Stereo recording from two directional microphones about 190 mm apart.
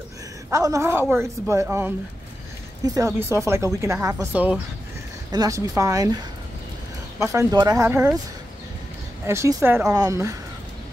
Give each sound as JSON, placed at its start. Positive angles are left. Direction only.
{"t": 0.5, "sound": "a woman's voice", "side_deg": -15}
{"t": 5.3, "sound": "speech", "side_deg": -20}
{"t": 7.2, "sound": "speech", "side_deg": -15}
{"t": 9.2, "sound": "speech", "side_deg": -15}